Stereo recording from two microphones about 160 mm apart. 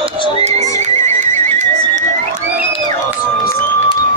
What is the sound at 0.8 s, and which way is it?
Horse, 50° right (ahead or behind).